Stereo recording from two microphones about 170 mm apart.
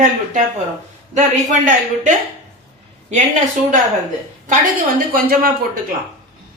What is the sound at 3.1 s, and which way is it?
Speech, 45° right (ahead or behind).